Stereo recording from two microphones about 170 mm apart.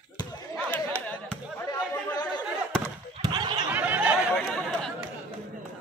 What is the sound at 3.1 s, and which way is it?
Basketball bounce, 25° right (ahead or behind).